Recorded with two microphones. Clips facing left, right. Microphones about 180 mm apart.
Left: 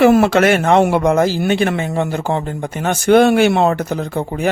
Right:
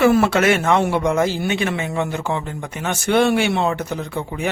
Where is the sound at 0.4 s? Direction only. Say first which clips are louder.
Left 4 dB; 35° left (ahead or behind).